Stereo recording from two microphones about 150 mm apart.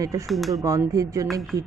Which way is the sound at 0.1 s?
20° right (ahead or behind).